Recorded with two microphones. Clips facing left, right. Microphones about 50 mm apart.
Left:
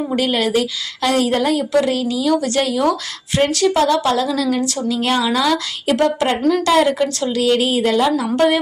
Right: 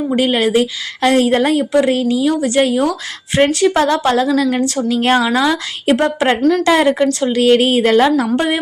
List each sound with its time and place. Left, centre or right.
0.1 s a woman's voice: right
8.3 s a woman's voice: centre